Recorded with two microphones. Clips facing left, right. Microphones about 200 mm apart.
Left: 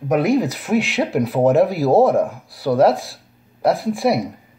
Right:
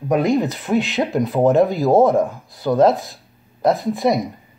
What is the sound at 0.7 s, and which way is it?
Speech, centre (ahead or behind).